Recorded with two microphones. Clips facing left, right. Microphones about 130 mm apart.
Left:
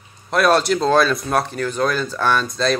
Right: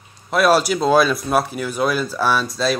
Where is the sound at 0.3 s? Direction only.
5° right (ahead or behind).